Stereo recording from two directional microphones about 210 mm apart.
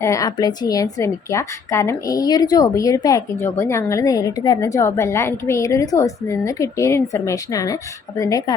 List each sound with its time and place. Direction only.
0.0 s a woman's voice: 15° left (ahead or behind)